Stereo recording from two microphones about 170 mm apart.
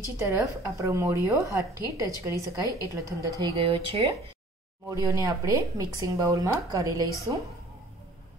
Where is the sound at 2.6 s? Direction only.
20° left (ahead or behind).